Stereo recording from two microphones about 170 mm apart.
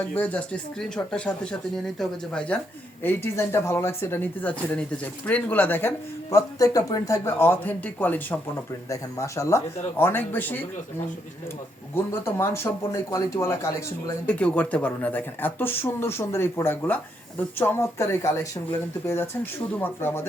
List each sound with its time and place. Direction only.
0.0 s speech: 10° left (ahead or behind)
12.2 s speech: 15° left (ahead or behind)